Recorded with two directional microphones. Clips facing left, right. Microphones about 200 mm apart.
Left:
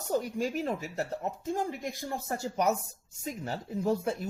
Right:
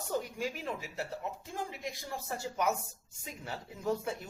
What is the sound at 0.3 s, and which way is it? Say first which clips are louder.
Speech: left 6 dB; 45° left (ahead or behind).